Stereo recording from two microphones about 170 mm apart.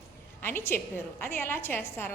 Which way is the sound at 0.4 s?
15° left (ahead or behind).